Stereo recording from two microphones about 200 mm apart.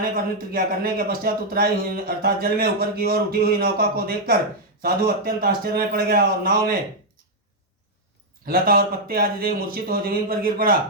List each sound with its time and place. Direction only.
0.5 s a man's voice: 45° right (ahead or behind)
8.4 s a man's voice: 45° right (ahead or behind)